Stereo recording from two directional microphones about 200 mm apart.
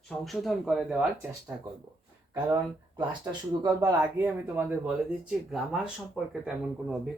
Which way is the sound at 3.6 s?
20° right (ahead or behind).